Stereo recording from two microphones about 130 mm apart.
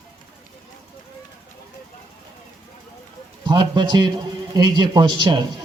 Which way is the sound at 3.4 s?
35° right (ahead or behind).